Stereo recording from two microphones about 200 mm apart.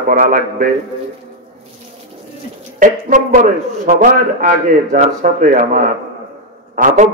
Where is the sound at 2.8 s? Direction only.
40° right (ahead or behind).